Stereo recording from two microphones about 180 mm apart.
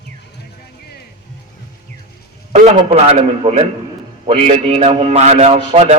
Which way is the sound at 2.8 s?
30° right (ahead or behind).